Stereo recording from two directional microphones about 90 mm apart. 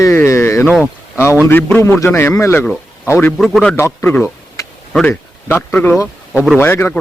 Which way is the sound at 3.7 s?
25° left (ahead or behind).